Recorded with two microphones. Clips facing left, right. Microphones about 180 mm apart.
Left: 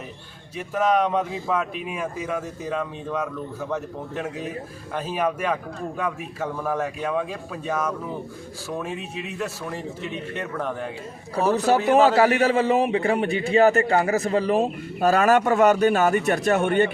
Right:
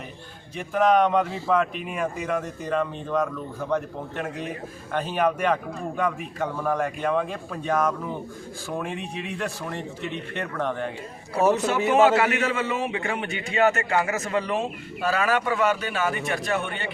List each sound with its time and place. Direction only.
0.7 s speech: 5° left (ahead or behind)
4.9 s a man's voice: 5° left (ahead or behind)
11.5 s a man's voice: 35° left (ahead or behind)